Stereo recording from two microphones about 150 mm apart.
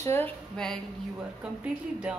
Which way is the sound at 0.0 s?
15° left (ahead or behind).